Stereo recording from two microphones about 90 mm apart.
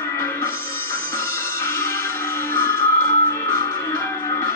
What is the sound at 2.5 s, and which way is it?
Music, 30° left (ahead or behind).